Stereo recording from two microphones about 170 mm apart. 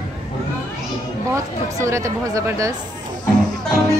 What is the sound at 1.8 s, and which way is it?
Speech, 20° right (ahead or behind).